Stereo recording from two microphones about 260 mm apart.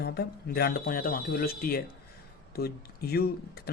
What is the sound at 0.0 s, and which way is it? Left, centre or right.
Speech, left.